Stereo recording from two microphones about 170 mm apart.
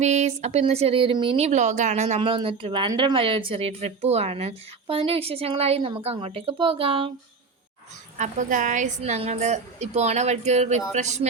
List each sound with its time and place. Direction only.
0.0 s speech: 40° right (ahead or behind)
8.2 s speech: 50° right (ahead or behind)